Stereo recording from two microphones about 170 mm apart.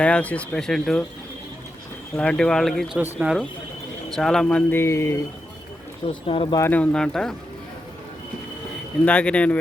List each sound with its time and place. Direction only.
0.0 s speech: 10° left (ahead or behind)
2.1 s speech: 5° left (ahead or behind)
6.2 s speech: 30° left (ahead or behind)
6.6 s speech: 10° left (ahead or behind)
9.0 s speech: 5° left (ahead or behind)